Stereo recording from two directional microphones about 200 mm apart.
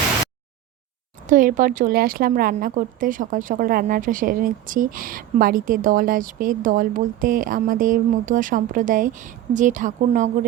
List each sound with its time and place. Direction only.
1.3 s a woman's voice: 40° right (ahead or behind)